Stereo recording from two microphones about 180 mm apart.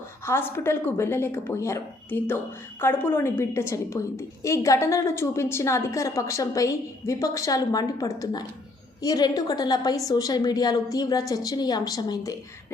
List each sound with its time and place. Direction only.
0.3 s a woman's voice: 15° left (ahead or behind)